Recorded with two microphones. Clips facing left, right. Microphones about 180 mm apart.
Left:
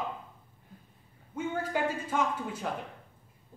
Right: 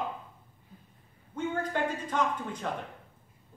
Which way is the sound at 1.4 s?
5° left (ahead or behind).